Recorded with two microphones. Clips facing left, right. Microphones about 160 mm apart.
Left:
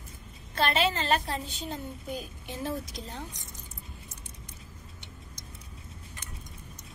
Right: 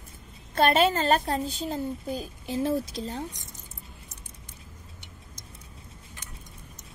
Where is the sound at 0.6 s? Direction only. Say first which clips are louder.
Right 6 dB; 50° right (ahead or behind).